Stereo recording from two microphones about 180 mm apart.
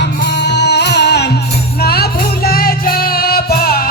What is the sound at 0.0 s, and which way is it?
Music, 75° left (ahead or behind).